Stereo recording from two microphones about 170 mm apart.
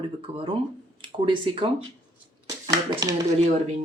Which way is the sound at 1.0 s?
30° right (ahead or behind).